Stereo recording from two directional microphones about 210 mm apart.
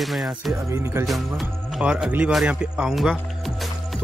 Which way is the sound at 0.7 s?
15° right (ahead or behind).